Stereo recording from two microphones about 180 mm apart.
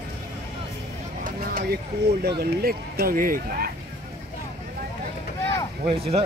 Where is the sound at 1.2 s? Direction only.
55° right (ahead or behind).